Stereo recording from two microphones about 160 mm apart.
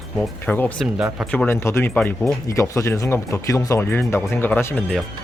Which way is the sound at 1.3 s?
10° left (ahead or behind).